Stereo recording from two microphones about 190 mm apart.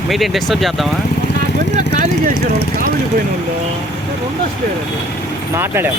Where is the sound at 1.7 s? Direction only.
40° right (ahead or behind).